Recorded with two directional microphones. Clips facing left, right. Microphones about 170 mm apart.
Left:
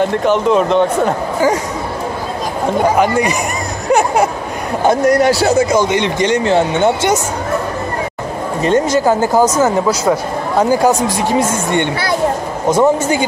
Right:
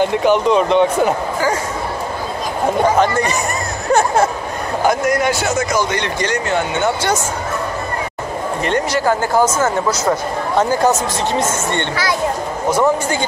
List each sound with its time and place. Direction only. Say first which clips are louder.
0.0 s speech: left 1 dB; centre (ahead or behind)
3.0 s speech: left 2 dB; 10° left (ahead or behind)
4.8 s speech: left 5 dB; 35° left (ahead or behind)
8.7 s speech: left 5 dB; 15° left (ahead or behind)